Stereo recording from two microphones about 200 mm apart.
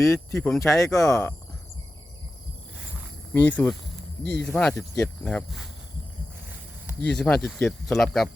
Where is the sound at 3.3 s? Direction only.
10° left (ahead or behind).